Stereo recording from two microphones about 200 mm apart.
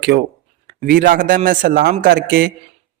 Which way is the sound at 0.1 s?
45° right (ahead or behind).